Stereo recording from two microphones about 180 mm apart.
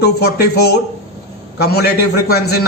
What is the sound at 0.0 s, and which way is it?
A man's voice, 60° left (ahead or behind).